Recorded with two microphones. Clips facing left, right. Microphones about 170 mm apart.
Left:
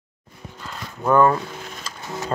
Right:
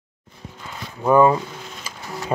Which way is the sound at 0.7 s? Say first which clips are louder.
Right 2 dB; 10° right (ahead or behind).